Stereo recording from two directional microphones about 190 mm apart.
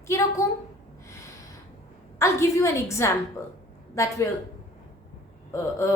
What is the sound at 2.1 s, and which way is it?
A woman's voice, 15° left (ahead or behind).